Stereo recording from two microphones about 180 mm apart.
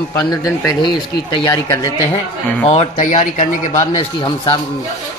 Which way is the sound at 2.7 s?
40° left (ahead or behind).